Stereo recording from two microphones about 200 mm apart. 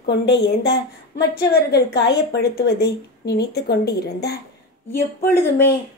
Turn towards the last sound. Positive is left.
turn(degrees=10)  # may be behind; listen again after turning